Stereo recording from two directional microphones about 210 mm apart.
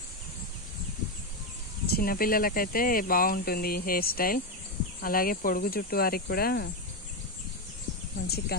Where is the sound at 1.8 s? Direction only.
45° left (ahead or behind).